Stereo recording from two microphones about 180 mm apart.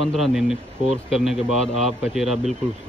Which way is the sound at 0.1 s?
Centre (ahead or behind).